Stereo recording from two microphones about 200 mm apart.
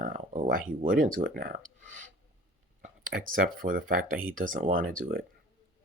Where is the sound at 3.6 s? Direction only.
45° right (ahead or behind).